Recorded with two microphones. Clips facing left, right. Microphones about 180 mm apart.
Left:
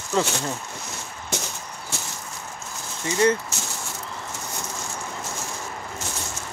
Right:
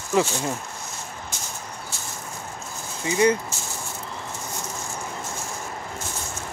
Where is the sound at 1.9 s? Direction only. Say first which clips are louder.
Left 3 dB; 75° left (ahead or behind).